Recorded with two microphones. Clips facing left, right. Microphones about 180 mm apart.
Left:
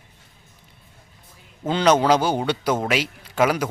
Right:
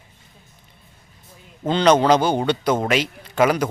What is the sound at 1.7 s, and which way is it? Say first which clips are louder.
A man's voice: right 2 dB; 10° left (ahead or behind).